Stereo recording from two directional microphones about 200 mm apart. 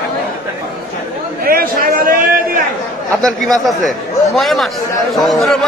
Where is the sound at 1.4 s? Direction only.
50° right (ahead or behind).